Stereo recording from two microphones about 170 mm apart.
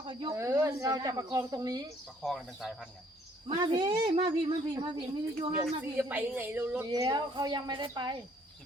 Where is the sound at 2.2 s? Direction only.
Centre (ahead or behind).